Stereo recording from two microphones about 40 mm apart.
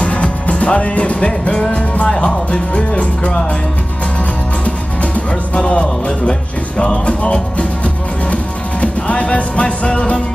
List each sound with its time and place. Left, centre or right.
0.0 s music: left
1.7 s speech: left
4.6 s music: left